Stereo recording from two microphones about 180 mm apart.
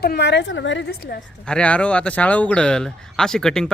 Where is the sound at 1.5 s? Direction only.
5° left (ahead or behind).